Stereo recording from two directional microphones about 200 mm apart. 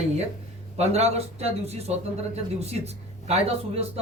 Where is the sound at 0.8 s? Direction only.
30° right (ahead or behind).